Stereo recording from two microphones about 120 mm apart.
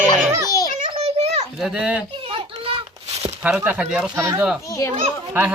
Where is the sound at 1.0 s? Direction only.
70° right (ahead or behind).